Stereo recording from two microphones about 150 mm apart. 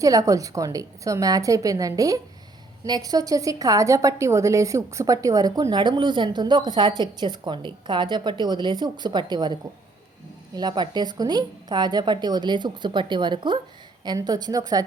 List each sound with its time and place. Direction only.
0.0 s a woman's voice: 25° right (ahead or behind)